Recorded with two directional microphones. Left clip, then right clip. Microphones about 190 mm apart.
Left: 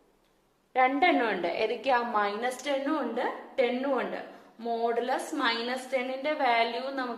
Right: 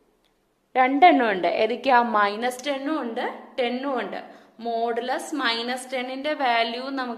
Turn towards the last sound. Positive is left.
turn(degrees=-45)  # may be behind; listen again after turning